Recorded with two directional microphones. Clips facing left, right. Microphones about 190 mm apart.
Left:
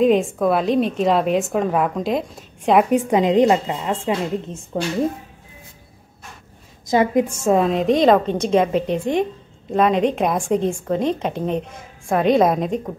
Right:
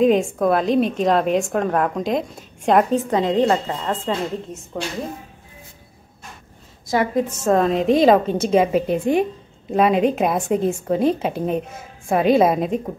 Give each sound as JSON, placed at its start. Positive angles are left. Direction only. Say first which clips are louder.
{"t": 0.0, "sound": "a woman's voice", "louder": "even", "side_deg": 0}
{"t": 2.9, "sound": "a woman's voice", "louder": "left 3 dB", "side_deg": 15}
{"t": 4.7, "sound": "a woman's voice", "louder": "left 4 dB", "side_deg": 30}
{"t": 6.9, "sound": "a woman's voice", "louder": "left 3 dB", "side_deg": 20}